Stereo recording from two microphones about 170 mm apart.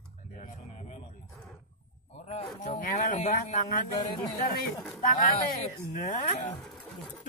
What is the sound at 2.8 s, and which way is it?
Speech, 55° left (ahead or behind).